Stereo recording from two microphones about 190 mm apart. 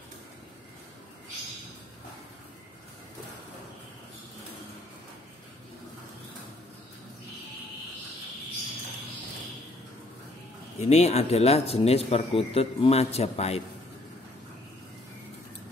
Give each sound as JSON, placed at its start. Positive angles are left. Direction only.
{"t": 10.8, "sound": "speech", "side_deg": 35}